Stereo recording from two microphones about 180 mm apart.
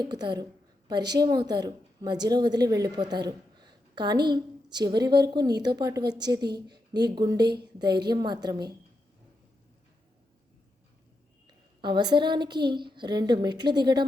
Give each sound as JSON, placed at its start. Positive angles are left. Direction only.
{"t": 0.0, "sound": "a woman's voice", "side_deg": -25}
{"t": 11.4, "sound": "a woman's voice", "side_deg": -25}